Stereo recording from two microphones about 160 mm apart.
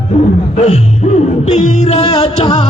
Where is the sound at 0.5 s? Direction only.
40° left (ahead or behind).